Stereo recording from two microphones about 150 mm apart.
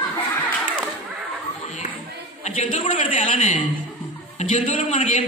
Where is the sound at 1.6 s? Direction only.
50° left (ahead or behind).